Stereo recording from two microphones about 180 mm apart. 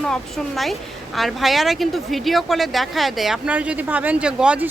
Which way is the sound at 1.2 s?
Centre (ahead or behind).